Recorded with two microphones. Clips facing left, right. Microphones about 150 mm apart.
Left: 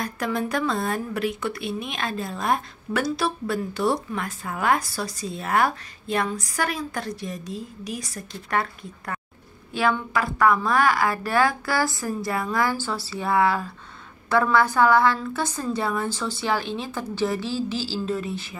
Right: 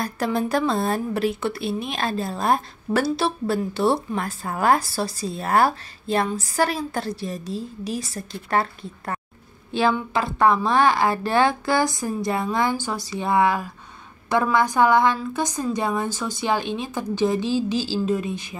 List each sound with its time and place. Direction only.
0.0 s a woman's voice: 30° right (ahead or behind)